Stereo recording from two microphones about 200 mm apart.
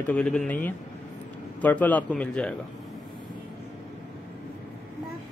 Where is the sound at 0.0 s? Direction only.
5° left (ahead or behind).